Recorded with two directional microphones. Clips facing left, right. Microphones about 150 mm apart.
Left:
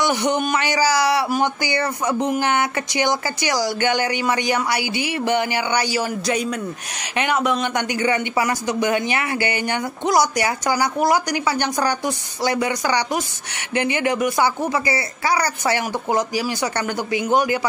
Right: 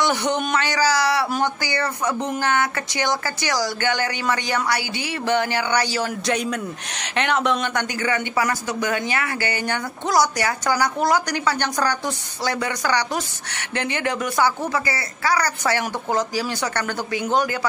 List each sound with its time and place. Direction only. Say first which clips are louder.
0.0 s a man's voice: left 2 dB; 15° left (ahead or behind)